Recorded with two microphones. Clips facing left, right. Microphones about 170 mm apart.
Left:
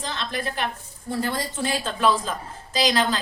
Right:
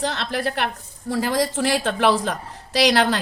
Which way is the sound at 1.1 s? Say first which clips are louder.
Right 5 dB; 90° right.